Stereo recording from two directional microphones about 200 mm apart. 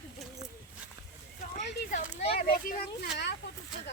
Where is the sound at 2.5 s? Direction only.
50° left (ahead or behind).